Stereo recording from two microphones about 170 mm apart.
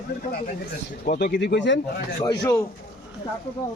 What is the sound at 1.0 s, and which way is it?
Speech, 70° left (ahead or behind).